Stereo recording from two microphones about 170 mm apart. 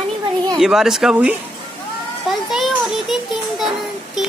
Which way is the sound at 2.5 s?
Centre (ahead or behind).